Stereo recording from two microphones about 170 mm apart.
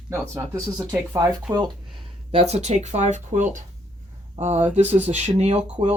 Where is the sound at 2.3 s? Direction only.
40° right (ahead or behind).